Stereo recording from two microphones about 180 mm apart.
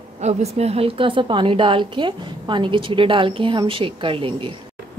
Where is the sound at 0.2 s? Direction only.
35° right (ahead or behind).